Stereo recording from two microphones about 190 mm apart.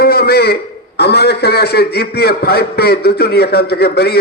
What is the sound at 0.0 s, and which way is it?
A man's voice, 55° left (ahead or behind).